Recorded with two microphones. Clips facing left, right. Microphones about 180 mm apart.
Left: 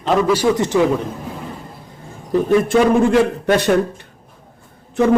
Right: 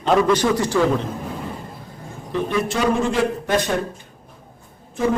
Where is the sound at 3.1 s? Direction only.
70° left (ahead or behind).